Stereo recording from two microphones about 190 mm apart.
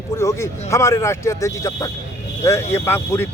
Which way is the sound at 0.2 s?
15° left (ahead or behind).